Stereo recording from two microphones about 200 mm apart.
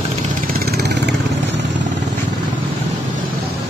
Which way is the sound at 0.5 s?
50° right (ahead or behind).